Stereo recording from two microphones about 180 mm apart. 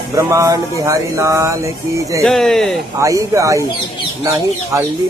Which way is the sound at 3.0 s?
15° right (ahead or behind).